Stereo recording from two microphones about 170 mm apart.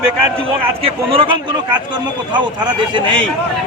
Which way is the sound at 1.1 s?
30° right (ahead or behind).